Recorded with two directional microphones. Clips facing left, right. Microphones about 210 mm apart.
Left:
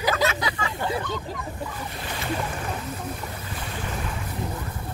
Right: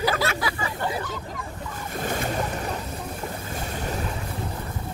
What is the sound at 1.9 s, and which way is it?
Speech, 45° right (ahead or behind).